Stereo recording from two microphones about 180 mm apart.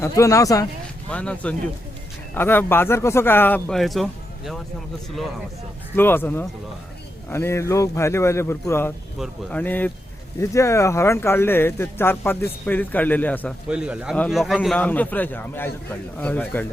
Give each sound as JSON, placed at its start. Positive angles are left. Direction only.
{"t": 0.0, "sound": "speech", "side_deg": 15}
{"t": 1.1, "sound": "speech", "side_deg": 5}
{"t": 6.0, "sound": "speech", "side_deg": 10}
{"t": 9.1, "sound": "speech", "side_deg": 5}
{"t": 13.7, "sound": "speech", "side_deg": -5}